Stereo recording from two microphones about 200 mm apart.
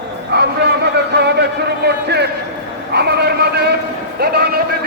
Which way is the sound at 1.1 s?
55° right (ahead or behind).